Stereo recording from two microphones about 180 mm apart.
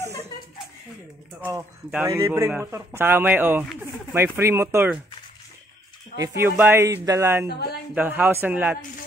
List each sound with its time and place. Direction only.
1.4 s speech: 15° right (ahead or behind)
6.1 s speech: 15° right (ahead or behind)